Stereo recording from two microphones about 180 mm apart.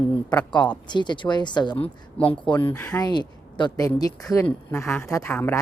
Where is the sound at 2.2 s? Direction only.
5° left (ahead or behind).